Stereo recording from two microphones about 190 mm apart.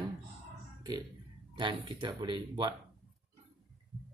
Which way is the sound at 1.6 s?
25° right (ahead or behind).